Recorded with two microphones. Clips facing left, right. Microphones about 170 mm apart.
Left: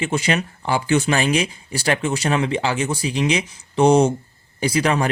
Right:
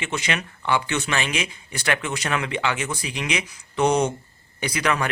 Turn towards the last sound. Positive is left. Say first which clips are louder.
# left 5 dB
turn(degrees=35)  # may be behind; listen again after turning